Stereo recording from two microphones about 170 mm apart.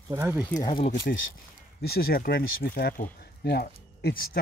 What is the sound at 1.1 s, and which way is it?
Speech, 60° left (ahead or behind).